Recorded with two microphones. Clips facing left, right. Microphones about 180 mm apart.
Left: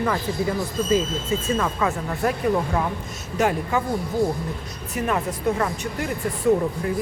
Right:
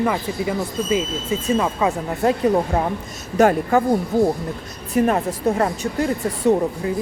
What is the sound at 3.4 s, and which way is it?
Speech, 50° right (ahead or behind).